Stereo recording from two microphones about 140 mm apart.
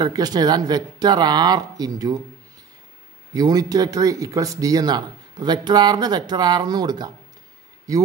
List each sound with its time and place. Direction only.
0.0 s speech: 30° right (ahead or behind)
3.3 s speech: 25° right (ahead or behind)